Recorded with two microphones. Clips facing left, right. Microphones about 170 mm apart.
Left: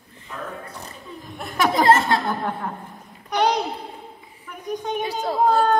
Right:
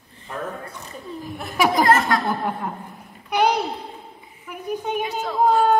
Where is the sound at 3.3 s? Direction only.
10° right (ahead or behind).